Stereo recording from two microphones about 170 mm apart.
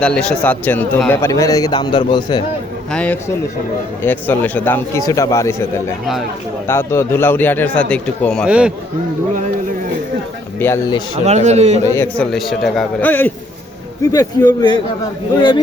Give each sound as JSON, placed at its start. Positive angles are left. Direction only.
{"t": 0.0, "sound": "speech", "side_deg": 5}
{"t": 2.9, "sound": "speech", "side_deg": 10}
{"t": 6.7, "sound": "speech", "side_deg": 15}
{"t": 8.4, "sound": "a man's voice", "side_deg": -5}
{"t": 10.6, "sound": "speech", "side_deg": 15}
{"t": 11.3, "sound": "a man's voice", "side_deg": -40}
{"t": 12.1, "sound": "a man's voice", "side_deg": 5}
{"t": 14.1, "sound": "a man's voice", "side_deg": 20}